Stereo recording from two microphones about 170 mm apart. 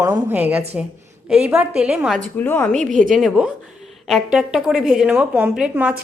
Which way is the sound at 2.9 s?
50° right (ahead or behind).